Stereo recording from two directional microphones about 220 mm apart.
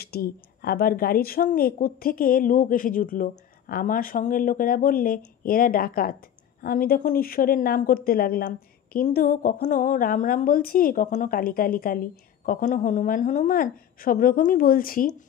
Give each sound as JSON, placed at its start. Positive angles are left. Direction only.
{"t": 0.0, "sound": "speech", "side_deg": 45}